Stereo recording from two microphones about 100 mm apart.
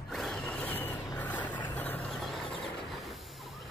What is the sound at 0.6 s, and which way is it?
Vehicle, 20° left (ahead or behind).